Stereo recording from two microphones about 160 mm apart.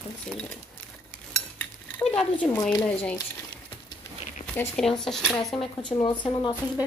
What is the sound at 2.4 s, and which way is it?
Speech, 10° left (ahead or behind).